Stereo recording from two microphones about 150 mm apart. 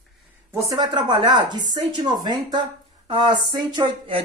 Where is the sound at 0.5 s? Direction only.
25° right (ahead or behind).